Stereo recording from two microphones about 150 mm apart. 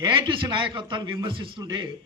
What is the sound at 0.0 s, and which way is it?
A man's voice, 30° right (ahead or behind).